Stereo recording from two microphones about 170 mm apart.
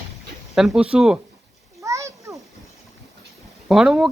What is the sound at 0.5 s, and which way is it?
Speech, centre (ahead or behind).